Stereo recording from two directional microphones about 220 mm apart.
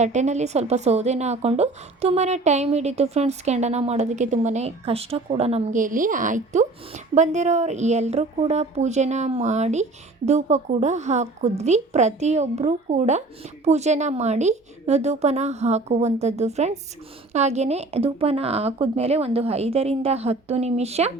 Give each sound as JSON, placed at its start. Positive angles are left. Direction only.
{"t": 0.0, "sound": "a woman's voice", "side_deg": -30}